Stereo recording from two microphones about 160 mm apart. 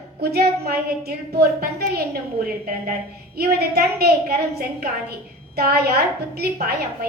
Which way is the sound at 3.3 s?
80° right.